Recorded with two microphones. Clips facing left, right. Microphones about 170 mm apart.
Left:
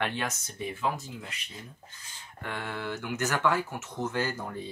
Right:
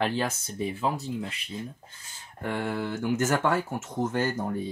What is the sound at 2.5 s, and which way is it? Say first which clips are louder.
Speech: right 5 dB; 35° right (ahead or behind).